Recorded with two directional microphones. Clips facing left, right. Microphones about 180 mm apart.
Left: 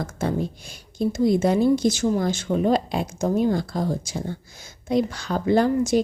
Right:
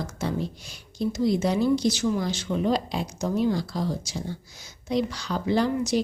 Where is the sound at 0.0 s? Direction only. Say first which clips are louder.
Left 4 dB; 50° left (ahead or behind).